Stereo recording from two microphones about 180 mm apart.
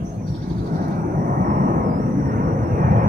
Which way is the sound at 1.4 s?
55° right (ahead or behind).